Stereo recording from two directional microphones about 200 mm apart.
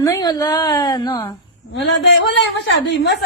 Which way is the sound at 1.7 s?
60° left (ahead or behind).